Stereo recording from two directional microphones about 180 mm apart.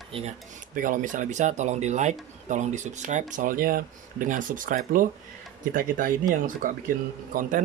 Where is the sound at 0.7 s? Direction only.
50° right (ahead or behind).